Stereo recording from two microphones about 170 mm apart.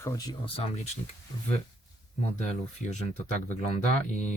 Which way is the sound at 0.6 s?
40° left (ahead or behind).